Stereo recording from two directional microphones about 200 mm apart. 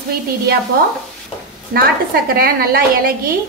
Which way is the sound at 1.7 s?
50° right (ahead or behind).